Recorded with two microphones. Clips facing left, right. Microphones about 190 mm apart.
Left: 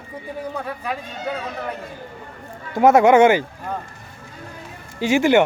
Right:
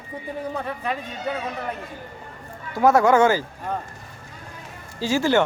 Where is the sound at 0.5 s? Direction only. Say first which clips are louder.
Even; centre (ahead or behind).